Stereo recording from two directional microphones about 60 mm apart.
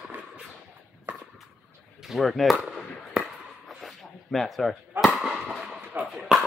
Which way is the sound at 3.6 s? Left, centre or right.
Centre.